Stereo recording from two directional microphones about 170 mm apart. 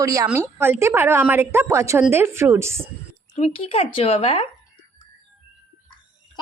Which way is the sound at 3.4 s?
35° left (ahead or behind).